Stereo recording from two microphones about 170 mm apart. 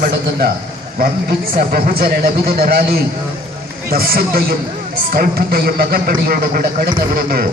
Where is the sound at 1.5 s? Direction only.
60° right (ahead or behind).